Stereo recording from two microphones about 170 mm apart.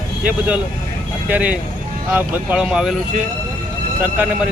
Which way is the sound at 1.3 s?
10° right (ahead or behind).